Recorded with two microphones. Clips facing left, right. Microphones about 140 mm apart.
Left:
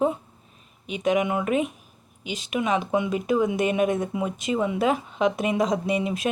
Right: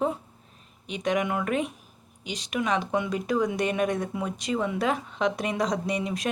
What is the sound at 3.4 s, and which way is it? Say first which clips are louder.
A woman's voice: left 3 dB; 20° left (ahead or behind).